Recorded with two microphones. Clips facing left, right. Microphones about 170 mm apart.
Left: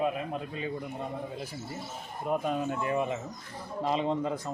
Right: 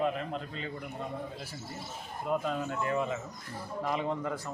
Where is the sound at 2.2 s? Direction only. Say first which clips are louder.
Left 2 dB; 15° left (ahead or behind).